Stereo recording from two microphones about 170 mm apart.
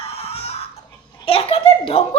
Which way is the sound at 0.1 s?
35° left (ahead or behind).